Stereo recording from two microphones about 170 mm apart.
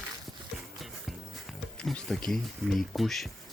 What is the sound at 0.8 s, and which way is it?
Music, centre (ahead or behind).